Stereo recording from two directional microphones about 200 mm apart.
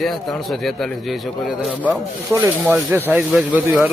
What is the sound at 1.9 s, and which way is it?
Rub, 10° right (ahead or behind).